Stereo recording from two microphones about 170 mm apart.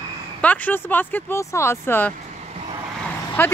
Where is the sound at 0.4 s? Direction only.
10° left (ahead or behind).